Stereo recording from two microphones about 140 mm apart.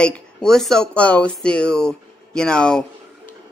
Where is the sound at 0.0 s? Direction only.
5° left (ahead or behind).